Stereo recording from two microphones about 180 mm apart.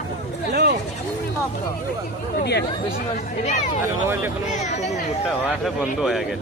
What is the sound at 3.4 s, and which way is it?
Speech, 40° left (ahead or behind).